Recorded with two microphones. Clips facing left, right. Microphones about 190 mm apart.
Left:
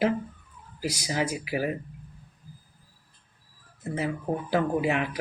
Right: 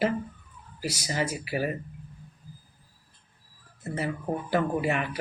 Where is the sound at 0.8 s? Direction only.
15° left (ahead or behind).